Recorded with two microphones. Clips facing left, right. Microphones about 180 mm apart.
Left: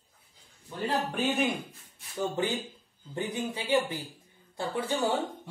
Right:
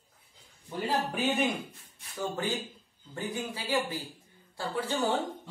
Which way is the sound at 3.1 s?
20° left (ahead or behind).